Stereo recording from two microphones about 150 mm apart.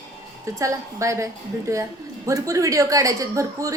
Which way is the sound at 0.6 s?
20° right (ahead or behind).